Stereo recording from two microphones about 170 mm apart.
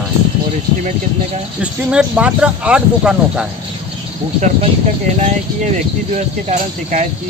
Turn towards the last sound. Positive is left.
turn(degrees=-45)  # may be behind; listen again after turning